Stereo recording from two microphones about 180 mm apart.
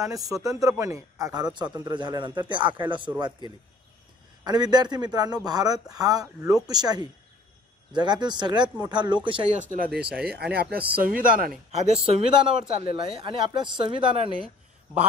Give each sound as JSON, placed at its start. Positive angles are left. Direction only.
{"t": 0.0, "sound": "a man's voice", "side_deg": -20}
{"t": 4.5, "sound": "a man's voice", "side_deg": -20}
{"t": 9.8, "sound": "speech", "side_deg": -5}
{"t": 10.2, "sound": "speech", "side_deg": -60}
{"t": 10.6, "sound": "speech", "side_deg": -10}
{"t": 11.0, "sound": "speech", "side_deg": -50}
{"t": 11.7, "sound": "a man's voice", "side_deg": -40}